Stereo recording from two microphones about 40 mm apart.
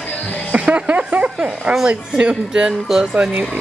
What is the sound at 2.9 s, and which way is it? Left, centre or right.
Music, centre.